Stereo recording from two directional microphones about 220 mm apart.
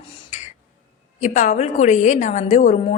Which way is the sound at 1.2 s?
35° left (ahead or behind).